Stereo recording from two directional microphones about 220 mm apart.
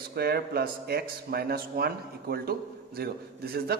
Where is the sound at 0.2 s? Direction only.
45° right (ahead or behind).